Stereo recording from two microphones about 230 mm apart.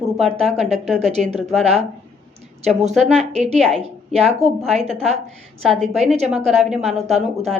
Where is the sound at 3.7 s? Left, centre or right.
Centre.